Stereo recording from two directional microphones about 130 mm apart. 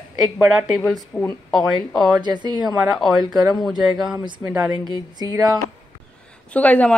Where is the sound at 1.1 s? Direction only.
20° left (ahead or behind).